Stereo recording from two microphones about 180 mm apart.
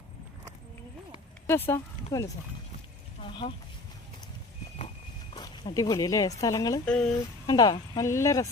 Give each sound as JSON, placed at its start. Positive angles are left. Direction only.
{"t": 1.5, "sound": "speech", "side_deg": 15}
{"t": 3.2, "sound": "a sound", "side_deg": 30}
{"t": 5.3, "sound": "speech", "side_deg": 25}
{"t": 6.8, "sound": "speech", "side_deg": 5}
{"t": 7.4, "sound": "speech", "side_deg": 20}